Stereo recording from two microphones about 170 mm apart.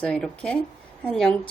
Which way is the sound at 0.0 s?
5° left (ahead or behind).